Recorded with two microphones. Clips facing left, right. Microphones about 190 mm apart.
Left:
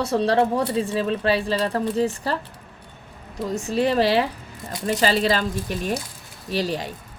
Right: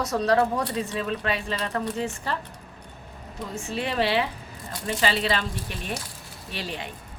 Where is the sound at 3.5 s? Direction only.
40° left (ahead or behind).